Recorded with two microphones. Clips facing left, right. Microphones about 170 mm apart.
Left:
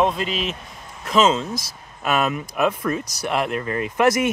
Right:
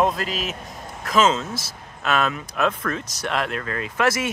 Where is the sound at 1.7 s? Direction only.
15° left (ahead or behind).